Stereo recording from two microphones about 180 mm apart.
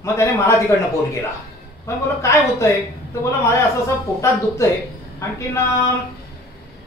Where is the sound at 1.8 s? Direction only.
15° left (ahead or behind).